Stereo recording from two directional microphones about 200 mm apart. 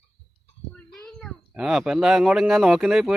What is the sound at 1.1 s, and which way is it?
Speech, centre (ahead or behind).